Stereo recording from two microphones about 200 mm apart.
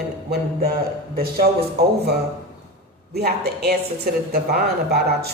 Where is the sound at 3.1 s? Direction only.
50° right (ahead or behind).